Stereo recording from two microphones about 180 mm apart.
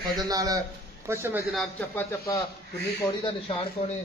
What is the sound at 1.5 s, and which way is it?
Speech, centre (ahead or behind).